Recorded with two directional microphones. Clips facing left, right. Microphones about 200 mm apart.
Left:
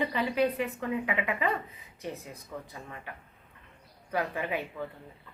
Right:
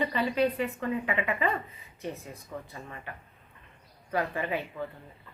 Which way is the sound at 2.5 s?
Centre (ahead or behind).